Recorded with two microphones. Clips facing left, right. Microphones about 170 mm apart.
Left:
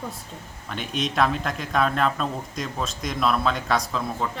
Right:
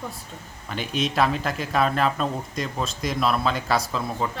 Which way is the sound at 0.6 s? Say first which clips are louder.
Right 2 dB; centre (ahead or behind).